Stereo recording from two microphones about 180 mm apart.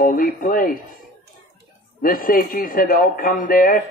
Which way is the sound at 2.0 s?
50° left (ahead or behind).